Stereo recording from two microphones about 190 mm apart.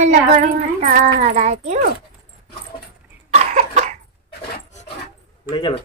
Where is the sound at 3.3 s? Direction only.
40° right (ahead or behind).